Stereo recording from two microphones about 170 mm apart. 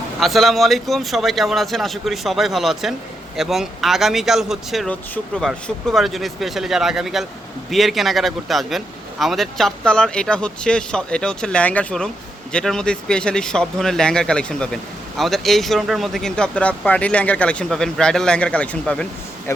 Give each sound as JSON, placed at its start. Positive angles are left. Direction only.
{"t": 0.2, "sound": "speech", "side_deg": 0}